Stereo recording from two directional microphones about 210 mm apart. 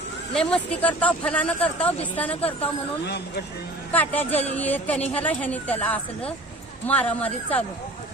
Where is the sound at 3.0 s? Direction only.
50° left (ahead or behind).